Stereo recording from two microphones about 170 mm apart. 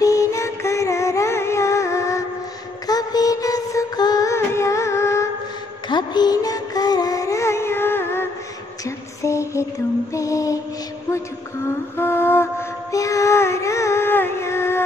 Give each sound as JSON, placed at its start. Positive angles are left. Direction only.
{"t": 0.0, "sound": "music", "side_deg": 20}
{"t": 8.8, "sound": "a sound", "side_deg": 20}
{"t": 10.1, "sound": "mantra", "side_deg": 20}
{"t": 11.1, "sound": "music", "side_deg": 15}